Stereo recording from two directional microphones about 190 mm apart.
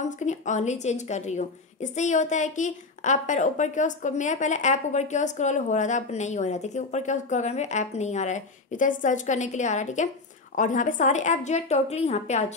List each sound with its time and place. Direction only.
0.0 s a woman's voice: 40° left (ahead or behind)